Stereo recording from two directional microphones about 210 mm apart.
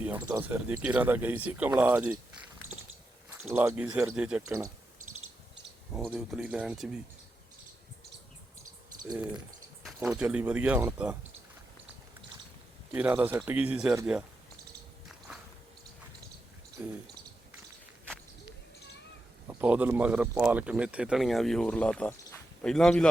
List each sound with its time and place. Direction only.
0.3 s speech: 10° right (ahead or behind)
3.2 s speech: 5° right (ahead or behind)
4.4 s speech: 15° right (ahead or behind)
4.9 s a sound: 80° right
5.9 s speech: centre (ahead or behind)
9.1 s speech: 5° right (ahead or behind)
12.9 s speech: 10° right (ahead or behind)
16.8 s speech: 10° right (ahead or behind)
19.5 s speech: 5° right (ahead or behind)